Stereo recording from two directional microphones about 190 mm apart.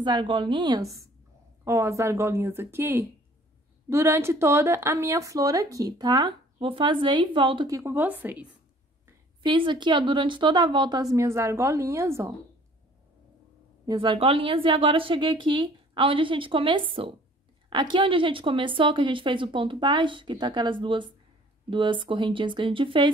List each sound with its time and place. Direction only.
0.0 s a woman's voice: 25° right (ahead or behind)
9.4 s a woman's voice: 25° right (ahead or behind)
13.8 s a woman's voice: 25° right (ahead or behind)